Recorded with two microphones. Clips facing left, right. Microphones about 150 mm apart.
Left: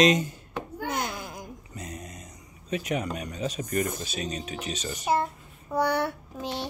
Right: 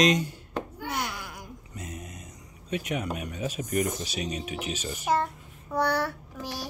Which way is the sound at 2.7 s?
Centre (ahead or behind).